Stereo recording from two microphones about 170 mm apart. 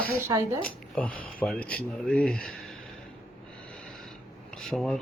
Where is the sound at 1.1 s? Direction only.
55° left (ahead or behind).